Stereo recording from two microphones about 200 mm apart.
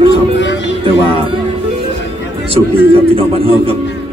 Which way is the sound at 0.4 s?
60° left (ahead or behind).